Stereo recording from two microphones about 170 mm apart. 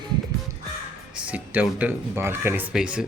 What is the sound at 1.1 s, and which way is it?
Speech, 10° right (ahead or behind).